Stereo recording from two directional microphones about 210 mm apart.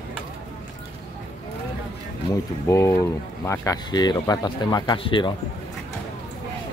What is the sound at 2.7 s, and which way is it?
Speech, 15° left (ahead or behind).